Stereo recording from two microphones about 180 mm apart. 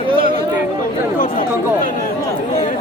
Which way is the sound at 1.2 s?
50° left (ahead or behind).